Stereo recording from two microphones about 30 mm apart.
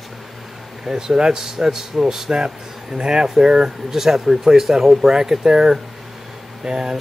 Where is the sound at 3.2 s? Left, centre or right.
Centre.